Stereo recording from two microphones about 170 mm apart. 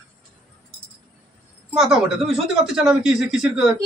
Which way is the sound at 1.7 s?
Centre (ahead or behind).